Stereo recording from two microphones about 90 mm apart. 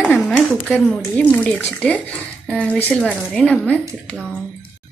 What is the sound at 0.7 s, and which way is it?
A woman's voice, 10° left (ahead or behind).